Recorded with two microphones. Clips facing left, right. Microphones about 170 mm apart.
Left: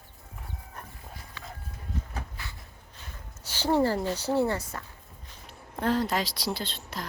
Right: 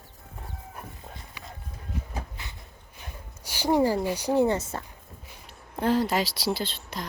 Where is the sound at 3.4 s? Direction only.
10° right (ahead or behind).